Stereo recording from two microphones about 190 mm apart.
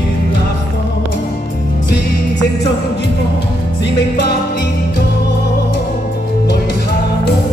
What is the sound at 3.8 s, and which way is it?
Music, 65° left (ahead or behind).